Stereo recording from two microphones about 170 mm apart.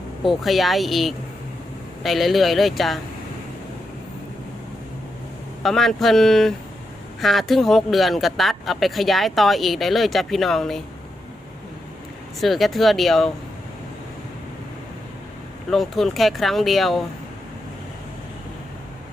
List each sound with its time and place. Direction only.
0.3 s speech: centre (ahead or behind)
5.6 s speech: centre (ahead or behind)
12.4 s speech: centre (ahead or behind)
15.7 s speech: centre (ahead or behind)